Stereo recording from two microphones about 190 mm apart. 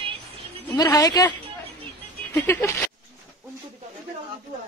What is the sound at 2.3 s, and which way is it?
Speech, 10° left (ahead or behind).